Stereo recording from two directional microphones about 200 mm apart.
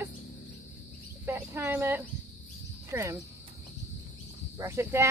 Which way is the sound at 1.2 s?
10° right (ahead or behind).